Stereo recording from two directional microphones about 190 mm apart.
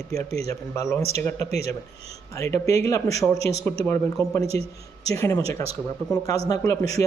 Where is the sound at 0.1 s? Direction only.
15° left (ahead or behind).